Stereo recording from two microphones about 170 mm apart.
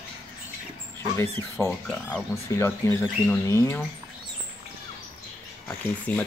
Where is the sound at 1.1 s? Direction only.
15° left (ahead or behind).